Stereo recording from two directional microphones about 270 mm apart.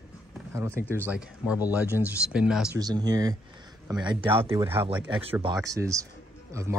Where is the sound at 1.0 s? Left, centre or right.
Centre.